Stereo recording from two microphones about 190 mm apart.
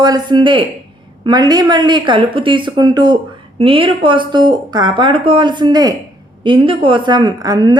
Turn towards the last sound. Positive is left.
turn(degrees=-20)  # may be behind; listen again after turning